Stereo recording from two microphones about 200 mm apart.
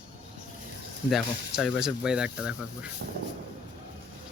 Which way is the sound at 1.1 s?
Centre (ahead or behind).